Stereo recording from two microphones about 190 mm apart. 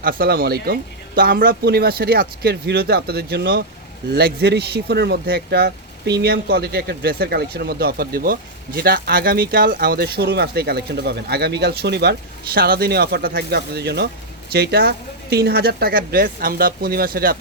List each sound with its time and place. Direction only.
0.0 s speech: 50° right (ahead or behind)